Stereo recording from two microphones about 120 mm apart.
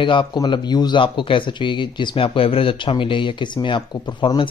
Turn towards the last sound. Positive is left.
turn(degrees=40)  # may be behind; listen again after turning